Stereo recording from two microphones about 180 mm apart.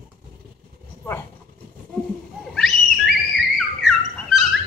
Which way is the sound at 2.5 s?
Centre (ahead or behind).